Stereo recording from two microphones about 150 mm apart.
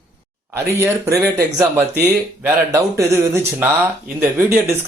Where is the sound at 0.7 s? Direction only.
15° right (ahead or behind).